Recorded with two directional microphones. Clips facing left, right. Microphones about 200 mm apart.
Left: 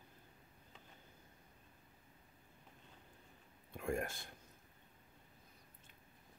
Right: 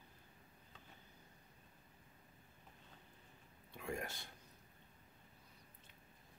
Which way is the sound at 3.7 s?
50° left (ahead or behind).